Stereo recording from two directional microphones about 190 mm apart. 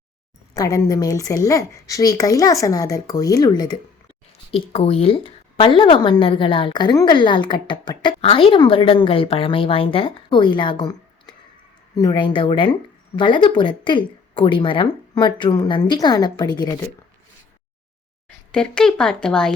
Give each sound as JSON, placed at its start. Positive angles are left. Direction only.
{"t": 0.5, "sound": "speech", "side_deg": 20}
{"t": 4.5, "sound": "speech", "side_deg": 30}
{"t": 18.5, "sound": "speech", "side_deg": 5}